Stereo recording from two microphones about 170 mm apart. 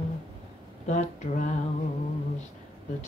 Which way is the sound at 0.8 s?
45° left (ahead or behind).